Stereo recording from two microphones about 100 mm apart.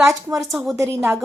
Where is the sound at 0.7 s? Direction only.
30° right (ahead or behind).